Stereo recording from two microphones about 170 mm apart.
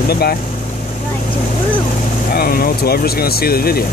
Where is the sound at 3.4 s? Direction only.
65° left (ahead or behind).